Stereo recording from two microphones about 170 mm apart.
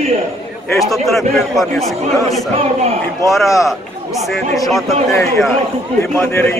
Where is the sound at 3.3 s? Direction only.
Centre (ahead or behind).